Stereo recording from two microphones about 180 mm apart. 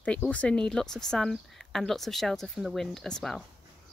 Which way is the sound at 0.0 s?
5° left (ahead or behind).